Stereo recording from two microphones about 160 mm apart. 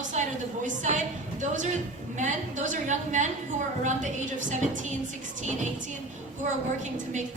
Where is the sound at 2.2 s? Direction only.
50° right (ahead or behind).